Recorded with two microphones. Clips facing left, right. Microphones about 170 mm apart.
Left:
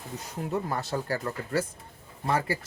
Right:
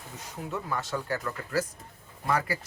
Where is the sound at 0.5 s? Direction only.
40° left (ahead or behind).